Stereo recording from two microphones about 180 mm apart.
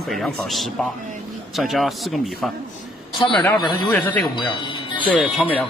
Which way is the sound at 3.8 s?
10° left (ahead or behind).